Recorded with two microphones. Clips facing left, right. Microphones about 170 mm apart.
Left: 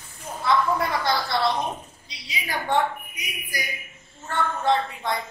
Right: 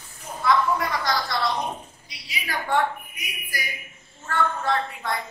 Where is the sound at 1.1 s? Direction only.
30° left (ahead or behind).